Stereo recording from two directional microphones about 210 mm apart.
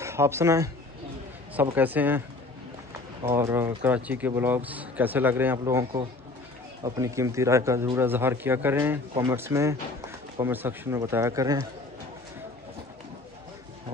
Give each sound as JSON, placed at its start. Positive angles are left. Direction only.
{"t": 0.0, "sound": "a man's voice", "side_deg": -10}
{"t": 3.3, "sound": "a man's voice", "side_deg": -10}